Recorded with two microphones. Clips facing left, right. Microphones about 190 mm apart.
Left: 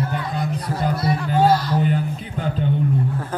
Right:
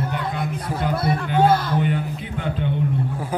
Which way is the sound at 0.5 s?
55° right (ahead or behind).